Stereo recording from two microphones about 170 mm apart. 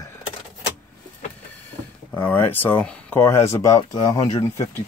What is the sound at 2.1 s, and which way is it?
Speech, 10° left (ahead or behind).